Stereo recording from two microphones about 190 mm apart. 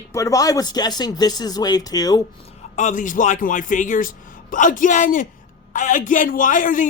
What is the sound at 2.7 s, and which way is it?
A man's voice, 40° left (ahead or behind).